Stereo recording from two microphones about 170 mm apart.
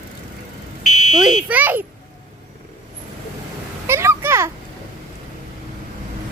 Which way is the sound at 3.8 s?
15° right (ahead or behind).